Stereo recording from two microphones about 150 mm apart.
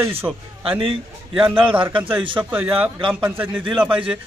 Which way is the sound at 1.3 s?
5° right (ahead or behind).